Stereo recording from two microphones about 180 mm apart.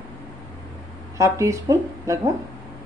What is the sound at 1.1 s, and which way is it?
Speech, 15° right (ahead or behind).